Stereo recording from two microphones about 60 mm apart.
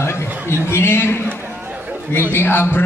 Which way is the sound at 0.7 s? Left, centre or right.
Left.